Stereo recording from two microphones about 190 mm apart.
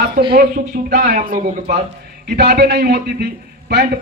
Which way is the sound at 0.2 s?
50° right (ahead or behind).